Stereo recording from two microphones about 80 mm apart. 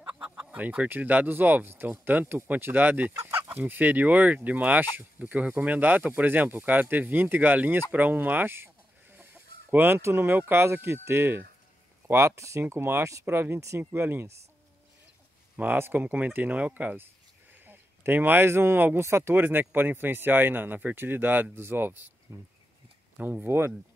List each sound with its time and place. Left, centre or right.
0.1 s speech: centre; by 14.3 s right
15.5 s speech: right